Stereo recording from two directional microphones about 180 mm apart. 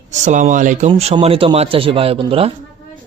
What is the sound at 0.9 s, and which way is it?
Speech, 30° right (ahead or behind).